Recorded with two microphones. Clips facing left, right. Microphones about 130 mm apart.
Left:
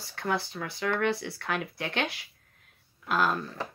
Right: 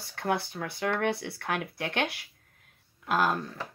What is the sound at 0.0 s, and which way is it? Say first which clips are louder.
Speech: right 1 dB; 55° right (ahead or behind).